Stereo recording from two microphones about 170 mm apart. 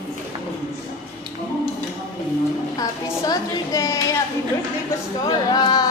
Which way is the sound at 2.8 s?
20° left (ahead or behind).